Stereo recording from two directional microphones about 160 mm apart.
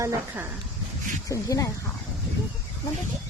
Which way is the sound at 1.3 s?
20° left (ahead or behind).